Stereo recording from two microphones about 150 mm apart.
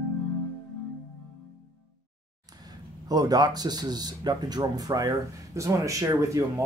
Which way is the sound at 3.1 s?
25° right (ahead or behind).